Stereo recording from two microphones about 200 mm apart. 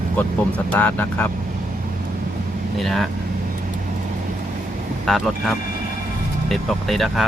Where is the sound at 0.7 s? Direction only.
10° left (ahead or behind).